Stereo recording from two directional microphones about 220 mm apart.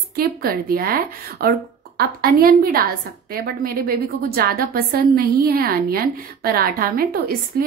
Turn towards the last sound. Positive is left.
turn(degrees=-40)  # may be behind; listen again after turning